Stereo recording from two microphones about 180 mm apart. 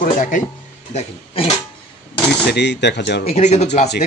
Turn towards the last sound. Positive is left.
turn(degrees=40)  # may be behind; listen again after turning